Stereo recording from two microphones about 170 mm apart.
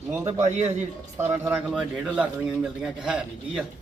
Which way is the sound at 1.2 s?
15° right (ahead or behind).